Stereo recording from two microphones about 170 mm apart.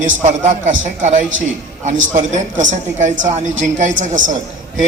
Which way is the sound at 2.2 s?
45° right (ahead or behind).